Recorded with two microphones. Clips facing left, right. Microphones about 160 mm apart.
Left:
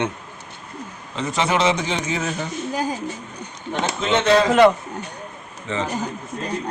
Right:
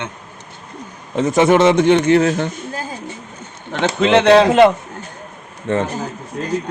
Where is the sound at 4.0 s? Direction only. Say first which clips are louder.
Right 7 dB; 70° right (ahead or behind).